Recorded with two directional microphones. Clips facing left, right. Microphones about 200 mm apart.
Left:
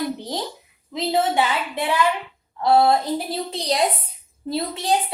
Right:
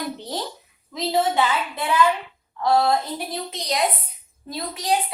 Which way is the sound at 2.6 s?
25° left (ahead or behind).